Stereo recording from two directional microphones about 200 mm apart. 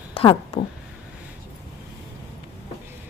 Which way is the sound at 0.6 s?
25° left (ahead or behind).